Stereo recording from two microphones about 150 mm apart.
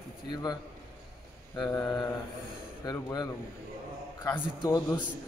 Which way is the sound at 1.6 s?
25° left (ahead or behind).